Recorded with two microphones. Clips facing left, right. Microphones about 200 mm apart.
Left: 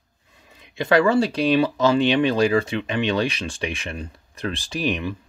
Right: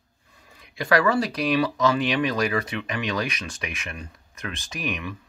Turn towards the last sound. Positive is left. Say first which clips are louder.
# left 6 dB
turn(degrees=30)  # may be behind; listen again after turning